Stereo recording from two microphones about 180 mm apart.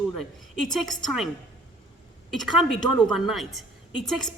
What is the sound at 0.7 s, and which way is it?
Speech, centre (ahead or behind).